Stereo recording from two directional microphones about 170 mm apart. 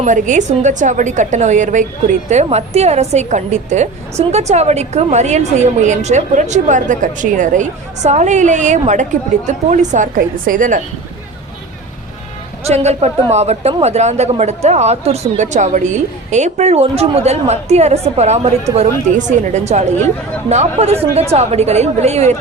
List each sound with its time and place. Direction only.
0.0 s a woman's voice: 45° right (ahead or behind)
12.6 s a woman's voice: 40° right (ahead or behind)